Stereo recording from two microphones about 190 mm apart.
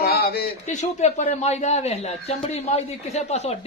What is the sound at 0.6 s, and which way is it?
Speech, 35° left (ahead or behind).